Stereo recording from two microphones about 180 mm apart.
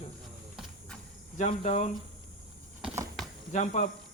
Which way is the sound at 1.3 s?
40° left (ahead or behind).